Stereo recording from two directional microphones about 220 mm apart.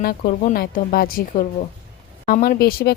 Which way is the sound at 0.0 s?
40° left (ahead or behind).